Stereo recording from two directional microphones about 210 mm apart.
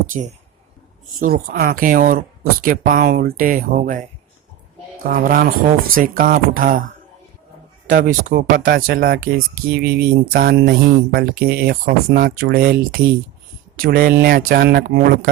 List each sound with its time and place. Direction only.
0.1 s speech: 35° right (ahead or behind)
1.2 s speech: 45° right (ahead or behind)
7.9 s speech: 40° right (ahead or behind)